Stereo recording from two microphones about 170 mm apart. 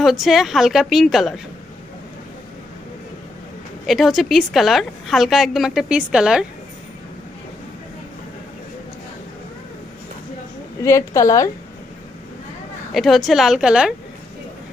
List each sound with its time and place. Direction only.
0.0 s a woman's voice: centre (ahead or behind)
3.8 s a woman's voice: centre (ahead or behind)
10.8 s a woman's voice: 15° left (ahead or behind)
12.9 s a woman's voice: centre (ahead or behind)